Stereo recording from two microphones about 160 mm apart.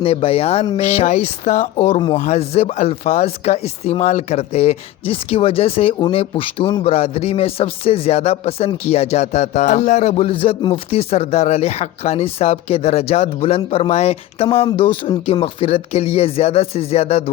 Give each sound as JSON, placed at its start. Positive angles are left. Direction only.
{"t": 0.0, "sound": "speech", "side_deg": 35}
{"t": 1.7, "sound": "speech", "side_deg": 35}
{"t": 2.1, "sound": "speech", "side_deg": 45}
{"t": 14.7, "sound": "speech", "side_deg": 30}